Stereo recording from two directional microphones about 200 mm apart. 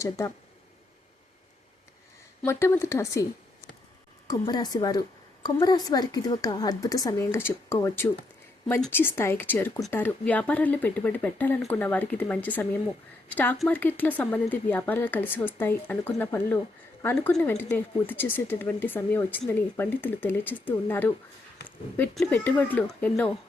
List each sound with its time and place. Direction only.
0.0 s speech: 15° left (ahead or behind)
2.4 s a woman's voice: 15° left (ahead or behind)